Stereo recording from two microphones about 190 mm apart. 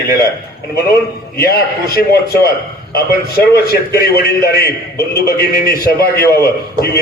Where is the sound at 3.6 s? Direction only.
55° left (ahead or behind).